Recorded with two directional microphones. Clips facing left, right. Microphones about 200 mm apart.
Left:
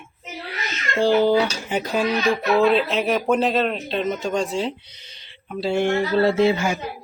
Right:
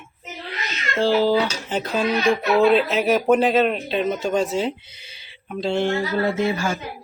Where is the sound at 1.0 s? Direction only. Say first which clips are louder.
Left 1 dB; 15° left (ahead or behind).